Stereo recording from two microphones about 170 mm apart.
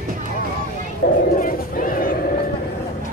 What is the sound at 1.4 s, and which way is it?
Crowd, 55° left (ahead or behind).